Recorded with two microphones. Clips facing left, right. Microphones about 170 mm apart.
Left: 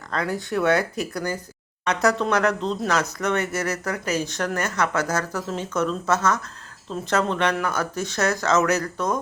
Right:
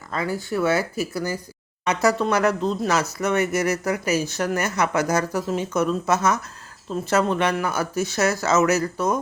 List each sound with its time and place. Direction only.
0.1 s speech: centre (ahead or behind)